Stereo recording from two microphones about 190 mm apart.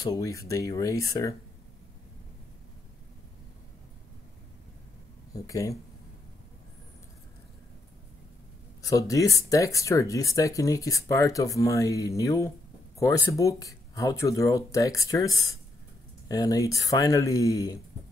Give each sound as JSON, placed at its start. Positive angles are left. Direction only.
{"t": 0.0, "sound": "speech", "side_deg": 15}
{"t": 5.3, "sound": "speech", "side_deg": 15}
{"t": 8.8, "sound": "speech", "side_deg": 15}